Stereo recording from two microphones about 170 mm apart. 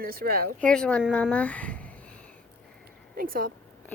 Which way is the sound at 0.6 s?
5° left (ahead or behind).